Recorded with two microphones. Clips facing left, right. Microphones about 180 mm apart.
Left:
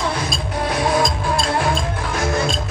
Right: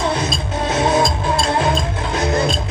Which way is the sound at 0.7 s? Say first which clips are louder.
Right 3 dB; 20° right (ahead or behind).